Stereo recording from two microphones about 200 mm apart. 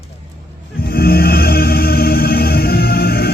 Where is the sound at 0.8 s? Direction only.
50° left (ahead or behind).